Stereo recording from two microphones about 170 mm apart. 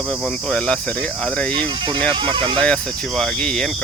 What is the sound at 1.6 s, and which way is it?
Speech, 30° right (ahead or behind).